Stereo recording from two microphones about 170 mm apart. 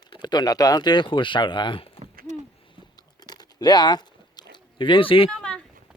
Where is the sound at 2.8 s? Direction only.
25° left (ahead or behind).